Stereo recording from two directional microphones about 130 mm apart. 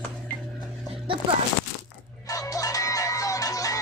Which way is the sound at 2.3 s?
25° left (ahead or behind).